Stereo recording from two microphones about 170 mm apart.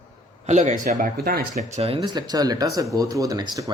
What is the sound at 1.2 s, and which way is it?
Speech, 65° right (ahead or behind).